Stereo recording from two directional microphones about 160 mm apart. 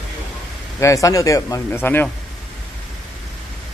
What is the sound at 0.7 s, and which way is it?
Speech, 20° left (ahead or behind).